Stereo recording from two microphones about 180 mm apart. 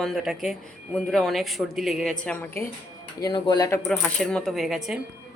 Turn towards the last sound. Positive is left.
turn(degrees=0)  # may be behind; listen again after turning